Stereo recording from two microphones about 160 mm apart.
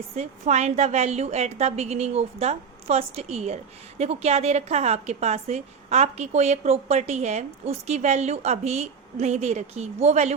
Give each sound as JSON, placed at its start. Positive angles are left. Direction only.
{"t": 0.2, "sound": "a woman's voice", "side_deg": -45}